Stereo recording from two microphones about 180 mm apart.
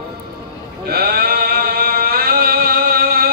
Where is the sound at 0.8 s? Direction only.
60° right (ahead or behind).